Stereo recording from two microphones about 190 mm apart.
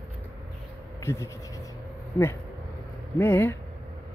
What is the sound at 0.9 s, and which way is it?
Speech, 15° left (ahead or behind).